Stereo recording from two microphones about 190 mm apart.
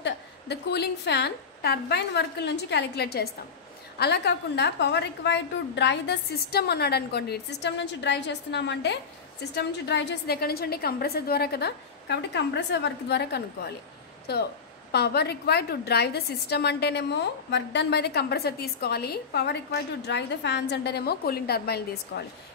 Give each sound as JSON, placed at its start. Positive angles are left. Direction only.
{"t": 0.0, "sound": "a woman's voice", "side_deg": 60}
{"t": 14.9, "sound": "a woman's voice", "side_deg": 60}